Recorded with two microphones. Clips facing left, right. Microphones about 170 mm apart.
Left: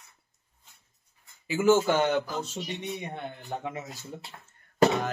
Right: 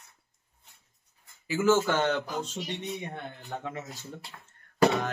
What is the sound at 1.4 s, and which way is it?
Speech, 15° left (ahead or behind).